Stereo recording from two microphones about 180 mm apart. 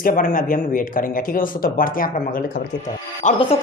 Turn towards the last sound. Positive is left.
turn(degrees=45)  # may be behind; listen again after turning